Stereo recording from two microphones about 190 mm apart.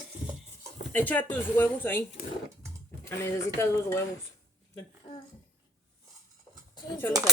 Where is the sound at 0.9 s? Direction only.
10° left (ahead or behind).